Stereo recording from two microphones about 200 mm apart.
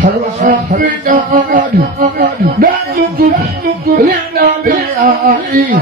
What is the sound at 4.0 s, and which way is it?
Speech, 45° right (ahead or behind).